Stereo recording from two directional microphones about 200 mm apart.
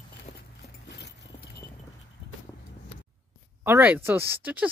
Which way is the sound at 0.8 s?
60° left (ahead or behind).